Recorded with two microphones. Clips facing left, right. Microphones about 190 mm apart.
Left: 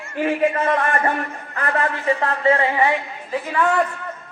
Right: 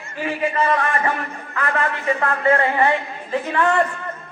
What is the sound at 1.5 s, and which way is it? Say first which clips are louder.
Speech: even; 40° left (ahead or behind).